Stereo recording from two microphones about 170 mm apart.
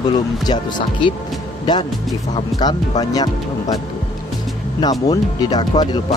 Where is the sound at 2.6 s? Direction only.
25° left (ahead or behind).